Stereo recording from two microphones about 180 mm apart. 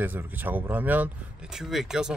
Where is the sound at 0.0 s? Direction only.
10° right (ahead or behind).